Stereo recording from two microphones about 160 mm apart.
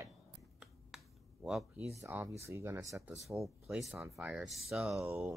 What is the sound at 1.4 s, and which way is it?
Speech, 5° right (ahead or behind).